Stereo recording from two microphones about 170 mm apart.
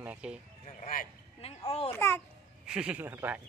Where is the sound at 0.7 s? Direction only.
50° left (ahead or behind).